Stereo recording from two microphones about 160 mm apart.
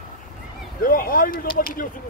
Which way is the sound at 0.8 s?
60° left (ahead or behind).